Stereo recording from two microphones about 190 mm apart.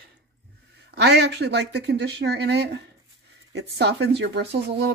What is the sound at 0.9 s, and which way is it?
Speech, 60° right (ahead or behind).